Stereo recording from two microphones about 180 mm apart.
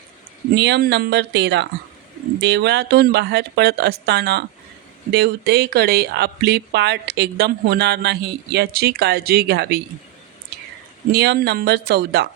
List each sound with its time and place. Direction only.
0.5 s a woman's voice: 70° right (ahead or behind)
11.1 s speech: 65° right (ahead or behind)